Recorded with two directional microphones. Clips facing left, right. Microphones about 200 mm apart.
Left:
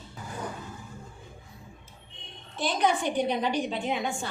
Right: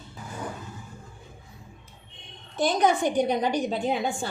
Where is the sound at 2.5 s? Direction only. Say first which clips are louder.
Right 4 dB; 45° right (ahead or behind).